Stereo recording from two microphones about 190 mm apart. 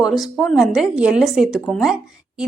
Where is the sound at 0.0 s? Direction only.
Centre (ahead or behind).